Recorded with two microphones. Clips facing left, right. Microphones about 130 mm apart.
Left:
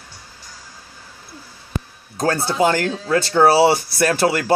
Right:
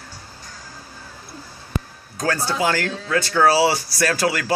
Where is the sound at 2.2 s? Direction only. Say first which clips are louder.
Left 4 dB; 25° left (ahead or behind).